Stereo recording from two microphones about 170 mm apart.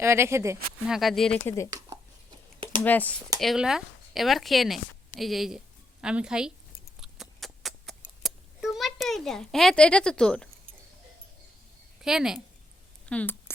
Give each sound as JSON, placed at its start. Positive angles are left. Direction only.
{"t": 0.0, "sound": "speech", "side_deg": -15}
{"t": 0.9, "sound": "speech", "side_deg": 0}
{"t": 2.8, "sound": "speech", "side_deg": 10}
{"t": 3.4, "sound": "a woman's voice", "side_deg": 0}
{"t": 7.0, "sound": "a sound", "side_deg": 0}
{"t": 12.0, "sound": "speech", "side_deg": -5}
{"t": 13.1, "sound": "speech", "side_deg": 10}